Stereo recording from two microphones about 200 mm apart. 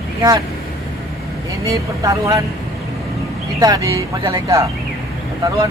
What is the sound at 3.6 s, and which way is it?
Speech, 15° right (ahead or behind).